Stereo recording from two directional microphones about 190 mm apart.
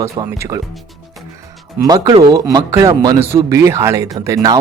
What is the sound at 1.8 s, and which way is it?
Speech, 20° right (ahead or behind).